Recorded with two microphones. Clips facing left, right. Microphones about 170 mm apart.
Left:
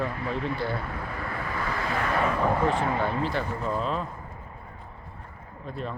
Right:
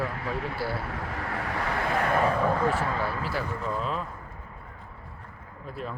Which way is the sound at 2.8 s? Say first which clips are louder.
Left 3 dB; 20° left (ahead or behind).